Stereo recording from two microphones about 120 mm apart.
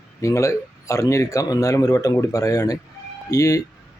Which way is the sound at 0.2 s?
25° left (ahead or behind).